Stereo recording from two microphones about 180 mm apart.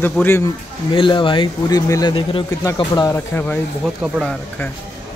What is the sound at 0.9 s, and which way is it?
Speech, 25° left (ahead or behind).